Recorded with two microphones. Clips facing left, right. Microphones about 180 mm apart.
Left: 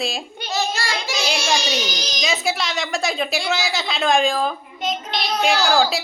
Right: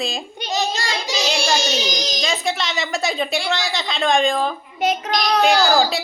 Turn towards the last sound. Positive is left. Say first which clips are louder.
# right 2 dB
turn(degrees=0)  # may be behind; listen again after turning